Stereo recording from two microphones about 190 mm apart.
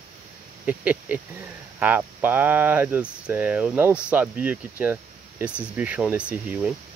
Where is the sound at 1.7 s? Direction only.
10° right (ahead or behind).